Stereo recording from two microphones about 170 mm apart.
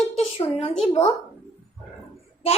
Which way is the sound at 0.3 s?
30° left (ahead or behind).